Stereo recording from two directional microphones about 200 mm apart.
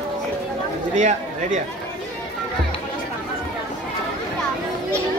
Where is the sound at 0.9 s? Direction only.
35° right (ahead or behind).